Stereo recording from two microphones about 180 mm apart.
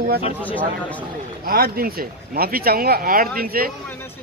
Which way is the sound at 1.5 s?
55° right (ahead or behind).